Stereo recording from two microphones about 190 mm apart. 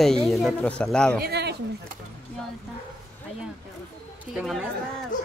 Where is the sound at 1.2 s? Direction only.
60° right (ahead or behind).